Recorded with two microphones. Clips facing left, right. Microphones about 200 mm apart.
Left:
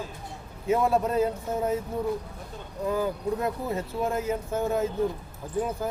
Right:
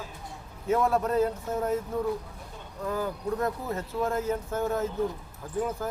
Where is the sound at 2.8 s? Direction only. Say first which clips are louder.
Left 3 dB; 15° left (ahead or behind).